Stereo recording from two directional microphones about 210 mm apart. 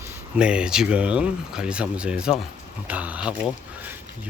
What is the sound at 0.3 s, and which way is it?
Speech, 5° right (ahead or behind).